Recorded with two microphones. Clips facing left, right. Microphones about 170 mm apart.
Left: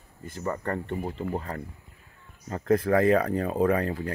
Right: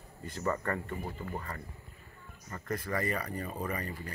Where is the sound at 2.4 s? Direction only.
75° left (ahead or behind).